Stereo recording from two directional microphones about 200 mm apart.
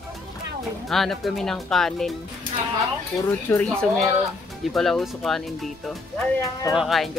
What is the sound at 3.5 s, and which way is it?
Speech, 5° left (ahead or behind).